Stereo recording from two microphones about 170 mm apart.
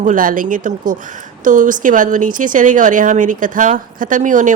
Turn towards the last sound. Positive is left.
turn(degrees=-50)  # may be behind; listen again after turning